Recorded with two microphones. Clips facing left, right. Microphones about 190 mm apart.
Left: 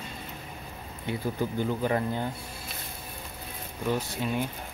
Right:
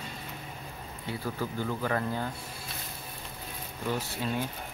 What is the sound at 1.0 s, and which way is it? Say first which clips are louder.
Speech: left 4 dB; 20° left (ahead or behind).